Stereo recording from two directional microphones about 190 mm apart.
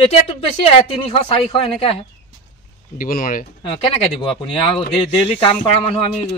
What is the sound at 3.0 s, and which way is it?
Speech, 45° left (ahead or behind).